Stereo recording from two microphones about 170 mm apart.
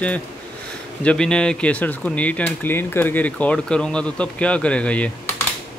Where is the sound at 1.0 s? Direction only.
5° left (ahead or behind).